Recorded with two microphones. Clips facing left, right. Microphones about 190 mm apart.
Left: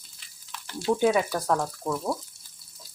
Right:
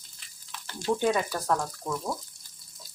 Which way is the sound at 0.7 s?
5° left (ahead or behind).